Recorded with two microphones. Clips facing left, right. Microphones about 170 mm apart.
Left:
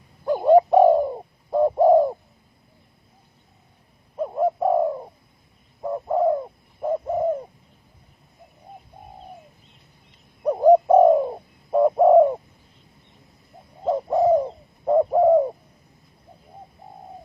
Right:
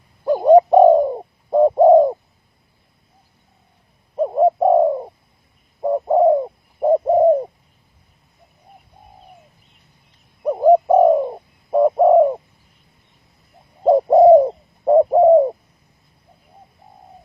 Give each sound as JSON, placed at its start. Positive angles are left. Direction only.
{"t": 0.3, "sound": "bird", "side_deg": -20}
{"t": 4.2, "sound": "bird", "side_deg": -30}
{"t": 10.4, "sound": "bird", "side_deg": -5}
{"t": 13.8, "sound": "bird", "side_deg": -35}
{"t": 14.9, "sound": "bird", "side_deg": -25}